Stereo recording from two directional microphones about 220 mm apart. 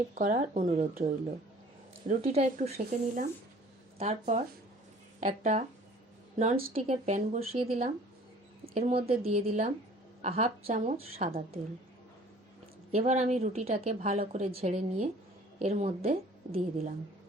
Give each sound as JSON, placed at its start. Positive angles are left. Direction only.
{"t": 0.1, "sound": "a woman's voice", "side_deg": -40}
{"t": 2.0, "sound": "a woman's voice", "side_deg": -30}
{"t": 6.7, "sound": "a woman's voice", "side_deg": -30}
{"t": 12.9, "sound": "a woman's voice", "side_deg": -30}